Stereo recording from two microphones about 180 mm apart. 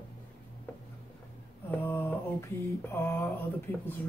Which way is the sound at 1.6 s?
10° left (ahead or behind).